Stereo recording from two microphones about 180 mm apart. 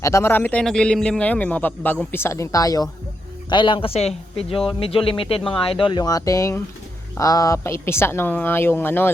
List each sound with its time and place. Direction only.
0.0 s a man's voice: 15° left (ahead or behind)